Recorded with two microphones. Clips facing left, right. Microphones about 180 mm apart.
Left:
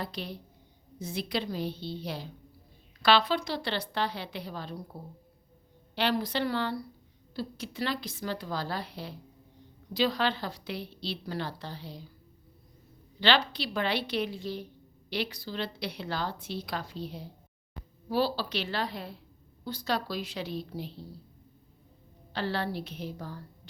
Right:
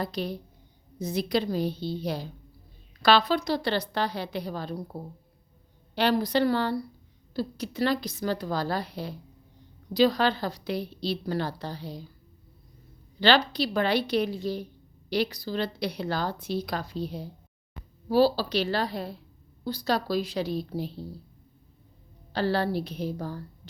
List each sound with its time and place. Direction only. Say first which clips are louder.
0.0 s a woman's voice: right 6 dB; 40° right (ahead or behind)
5.9 s a woman's voice: right 5 dB; 40° right (ahead or behind)
13.1 s a woman's voice: right 5 dB; 40° right (ahead or behind)
22.3 s a woman's voice: right 6 dB; 40° right (ahead or behind)